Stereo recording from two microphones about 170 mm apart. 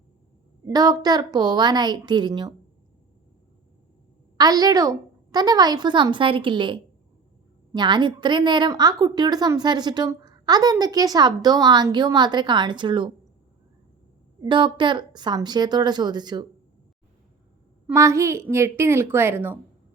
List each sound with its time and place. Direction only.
0.6 s a woman's voice: 20° right (ahead or behind)
4.4 s a woman's voice: 25° right (ahead or behind)
14.4 s a woman's voice: 30° right (ahead or behind)
17.9 s a woman's voice: 15° right (ahead or behind)